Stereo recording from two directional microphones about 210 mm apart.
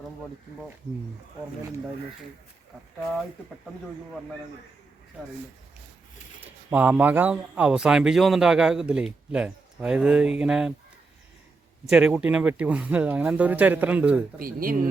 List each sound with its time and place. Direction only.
6.4 s speech: 10° right (ahead or behind)
11.9 s speech: 5° right (ahead or behind)
14.3 s speech: 45° right (ahead or behind)